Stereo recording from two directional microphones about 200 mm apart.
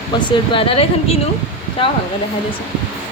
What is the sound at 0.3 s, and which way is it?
Speech, 25° left (ahead or behind).